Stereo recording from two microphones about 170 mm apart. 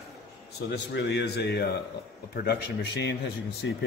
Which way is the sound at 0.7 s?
90° left.